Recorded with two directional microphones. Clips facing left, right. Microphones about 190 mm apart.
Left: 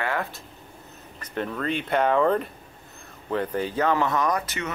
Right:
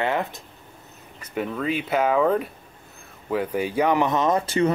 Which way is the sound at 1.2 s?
10° right (ahead or behind).